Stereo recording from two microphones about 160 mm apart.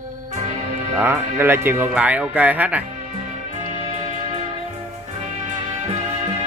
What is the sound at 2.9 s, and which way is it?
Music, 50° right (ahead or behind).